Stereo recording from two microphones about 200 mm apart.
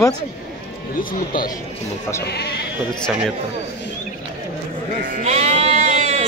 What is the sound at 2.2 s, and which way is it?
Speech, 55° left (ahead or behind).